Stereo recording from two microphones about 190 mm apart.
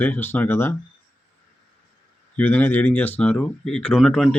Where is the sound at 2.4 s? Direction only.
10° left (ahead or behind).